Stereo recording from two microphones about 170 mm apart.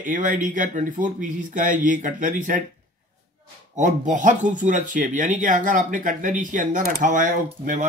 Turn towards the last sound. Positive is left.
turn(degrees=-50)  # may be behind; listen again after turning